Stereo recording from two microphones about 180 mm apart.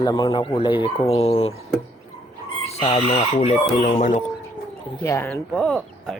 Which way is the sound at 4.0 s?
50° left (ahead or behind).